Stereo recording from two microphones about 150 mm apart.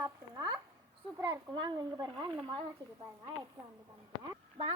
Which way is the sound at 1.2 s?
30° right (ahead or behind).